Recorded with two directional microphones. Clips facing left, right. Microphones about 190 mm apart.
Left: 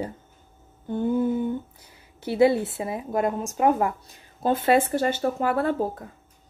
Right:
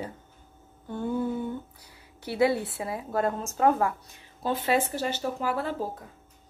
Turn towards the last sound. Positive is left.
turn(degrees=55)  # may be behind; listen again after turning